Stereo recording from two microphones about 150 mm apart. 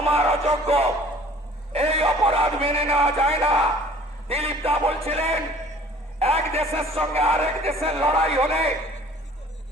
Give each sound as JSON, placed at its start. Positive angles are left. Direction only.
{"t": 0.0, "sound": "music", "side_deg": -40}
{"t": 1.7, "sound": "a sound", "side_deg": -40}
{"t": 4.3, "sound": "a man's voice", "side_deg": -40}